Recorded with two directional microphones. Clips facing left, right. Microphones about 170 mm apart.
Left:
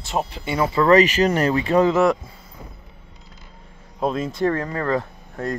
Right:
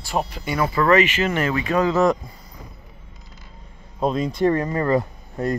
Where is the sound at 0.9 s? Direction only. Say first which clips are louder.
Left 4 dB; 40° left (ahead or behind).